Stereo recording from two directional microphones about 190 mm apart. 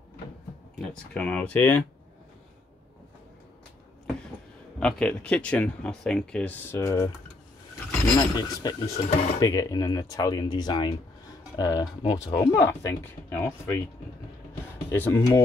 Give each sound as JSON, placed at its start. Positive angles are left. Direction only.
{"t": 0.7, "sound": "speech", "side_deg": 5}
{"t": 4.7, "sound": "speech", "side_deg": 5}
{"t": 8.2, "sound": "speech", "side_deg": 20}
{"t": 14.9, "sound": "speech", "side_deg": 15}